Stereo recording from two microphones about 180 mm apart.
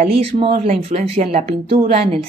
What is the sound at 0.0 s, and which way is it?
Speech, 35° right (ahead or behind).